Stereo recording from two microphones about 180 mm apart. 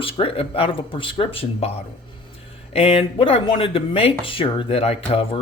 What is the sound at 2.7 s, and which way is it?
Speech, 35° left (ahead or behind).